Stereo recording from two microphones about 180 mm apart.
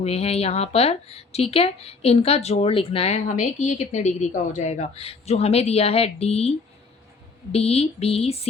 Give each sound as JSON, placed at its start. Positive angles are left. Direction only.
{"t": 0.0, "sound": "speech", "side_deg": 35}
{"t": 7.5, "sound": "speech", "side_deg": 35}